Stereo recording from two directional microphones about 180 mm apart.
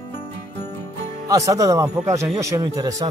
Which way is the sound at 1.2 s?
20° right (ahead or behind).